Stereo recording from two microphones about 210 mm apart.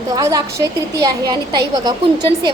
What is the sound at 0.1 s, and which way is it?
A woman's voice, 15° right (ahead or behind).